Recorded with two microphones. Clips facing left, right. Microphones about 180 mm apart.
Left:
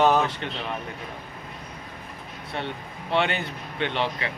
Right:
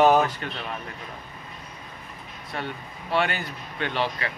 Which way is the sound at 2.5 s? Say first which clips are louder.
Left 1 dB; 25° left (ahead or behind).